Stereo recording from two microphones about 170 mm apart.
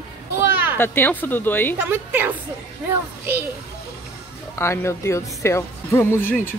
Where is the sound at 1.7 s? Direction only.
10° right (ahead or behind).